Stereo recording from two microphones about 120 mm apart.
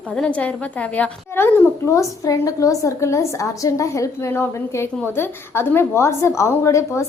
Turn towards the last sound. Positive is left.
turn(degrees=25)  # may be behind; listen again after turning